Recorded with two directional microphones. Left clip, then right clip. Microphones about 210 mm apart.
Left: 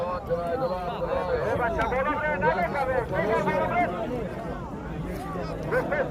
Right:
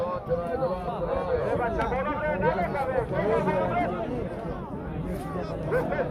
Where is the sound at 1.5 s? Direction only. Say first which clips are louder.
Left 1 dB; 45° right (ahead or behind).